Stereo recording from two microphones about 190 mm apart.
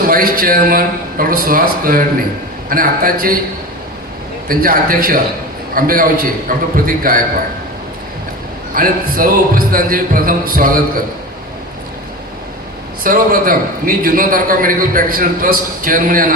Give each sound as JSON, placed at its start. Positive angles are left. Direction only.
{"t": 0.1, "sound": "a man's voice", "side_deg": -50}
{"t": 4.4, "sound": "a man's voice", "side_deg": -50}
{"t": 8.7, "sound": "a man's voice", "side_deg": -50}
{"t": 13.0, "sound": "a man's voice", "side_deg": -50}